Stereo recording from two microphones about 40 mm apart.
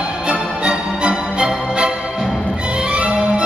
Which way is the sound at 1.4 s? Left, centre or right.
Centre.